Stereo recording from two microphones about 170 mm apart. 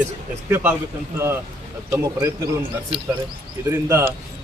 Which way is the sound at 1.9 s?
20° right (ahead or behind).